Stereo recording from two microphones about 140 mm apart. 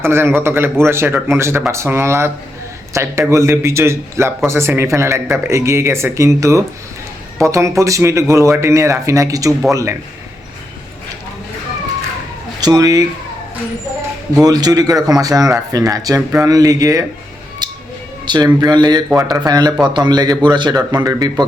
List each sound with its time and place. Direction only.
0.0 s a man's voice: 15° right (ahead or behind)
12.5 s speech: 30° right (ahead or behind)
14.4 s speech: 25° right (ahead or behind)
17.6 s a sound: 30° right (ahead or behind)
18.3 s speech: 30° right (ahead or behind)